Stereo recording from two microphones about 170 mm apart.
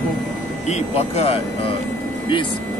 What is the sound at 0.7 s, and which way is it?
Speech, 40° left (ahead or behind).